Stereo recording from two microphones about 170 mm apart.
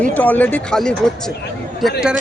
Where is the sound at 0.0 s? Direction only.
10° left (ahead or behind).